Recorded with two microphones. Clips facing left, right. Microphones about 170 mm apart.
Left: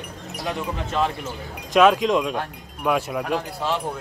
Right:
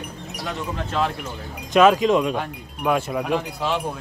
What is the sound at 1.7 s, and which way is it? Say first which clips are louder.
Speech: right 1 dB; centre (ahead or behind).